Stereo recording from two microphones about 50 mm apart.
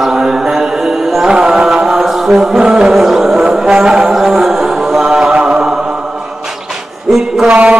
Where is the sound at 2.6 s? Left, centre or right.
Centre.